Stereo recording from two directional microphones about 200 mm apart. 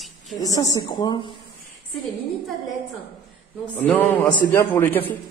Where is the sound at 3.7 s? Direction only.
10° left (ahead or behind).